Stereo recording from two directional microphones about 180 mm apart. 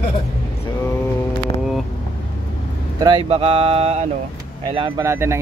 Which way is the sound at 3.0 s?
30° right (ahead or behind).